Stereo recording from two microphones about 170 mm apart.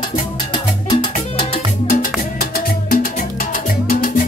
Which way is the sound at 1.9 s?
60° left (ahead or behind).